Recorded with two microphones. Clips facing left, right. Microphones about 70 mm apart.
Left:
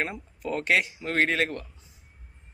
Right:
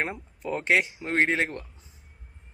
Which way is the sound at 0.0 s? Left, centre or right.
Right.